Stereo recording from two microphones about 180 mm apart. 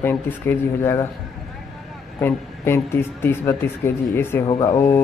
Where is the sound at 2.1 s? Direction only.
15° left (ahead or behind).